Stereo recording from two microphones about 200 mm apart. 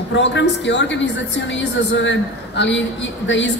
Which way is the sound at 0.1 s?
65° left (ahead or behind).